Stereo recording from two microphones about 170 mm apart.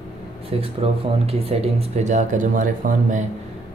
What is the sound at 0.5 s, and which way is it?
Speech, 35° right (ahead or behind).